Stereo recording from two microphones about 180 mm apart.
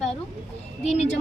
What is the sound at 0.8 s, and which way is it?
Speech, 35° left (ahead or behind).